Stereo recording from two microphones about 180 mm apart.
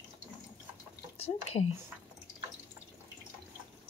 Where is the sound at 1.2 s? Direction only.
35° left (ahead or behind).